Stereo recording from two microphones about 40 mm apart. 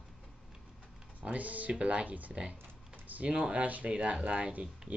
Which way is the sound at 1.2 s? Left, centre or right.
Right.